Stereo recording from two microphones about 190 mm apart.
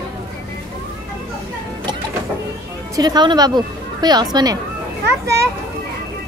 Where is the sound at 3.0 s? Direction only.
20° right (ahead or behind).